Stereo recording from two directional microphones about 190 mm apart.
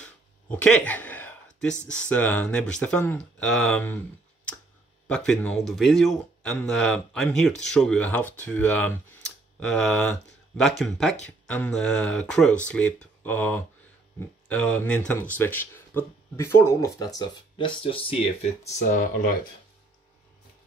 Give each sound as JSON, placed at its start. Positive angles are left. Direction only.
{"t": 0.0, "sound": "a sound", "side_deg": 5}
{"t": 2.0, "sound": "speech", "side_deg": 5}
{"t": 5.0, "sound": "speech", "side_deg": 5}
{"t": 18.9, "sound": "speech", "side_deg": 50}